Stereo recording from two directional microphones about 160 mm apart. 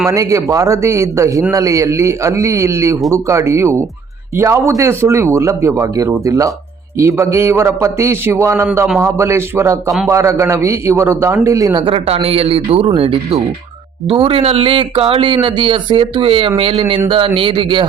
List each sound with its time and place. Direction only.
0.1 s a man's voice: 20° right (ahead or behind)